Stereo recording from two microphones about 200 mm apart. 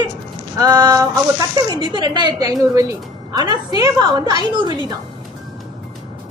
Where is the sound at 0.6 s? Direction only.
20° right (ahead or behind).